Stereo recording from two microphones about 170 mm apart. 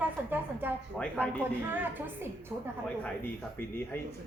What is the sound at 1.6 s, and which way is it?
Speech, 10° right (ahead or behind).